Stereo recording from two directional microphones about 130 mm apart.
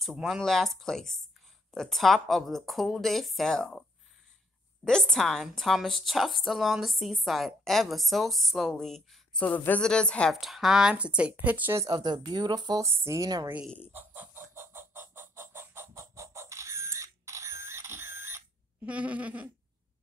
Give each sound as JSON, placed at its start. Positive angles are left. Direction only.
{"t": 0.0, "sound": "a woman's voice", "side_deg": -5}
{"t": 4.8, "sound": "a woman's voice", "side_deg": 5}
{"t": 9.5, "sound": "a woman's voice", "side_deg": 15}
{"t": 11.8, "sound": "speech", "side_deg": -35}
{"t": 12.8, "sound": "a woman's voice", "side_deg": -20}
{"t": 13.9, "sound": "chicken", "side_deg": -15}